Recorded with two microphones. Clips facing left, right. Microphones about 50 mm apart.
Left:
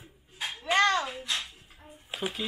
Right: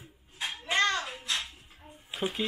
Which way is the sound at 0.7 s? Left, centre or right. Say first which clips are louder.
Left 4 dB; centre.